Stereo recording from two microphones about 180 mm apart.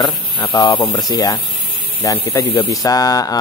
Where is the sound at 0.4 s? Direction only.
25° left (ahead or behind).